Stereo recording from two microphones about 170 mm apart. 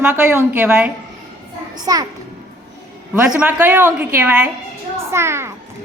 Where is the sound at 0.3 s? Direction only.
10° right (ahead or behind).